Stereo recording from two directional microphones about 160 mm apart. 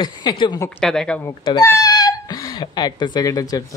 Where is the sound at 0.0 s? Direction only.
30° left (ahead or behind).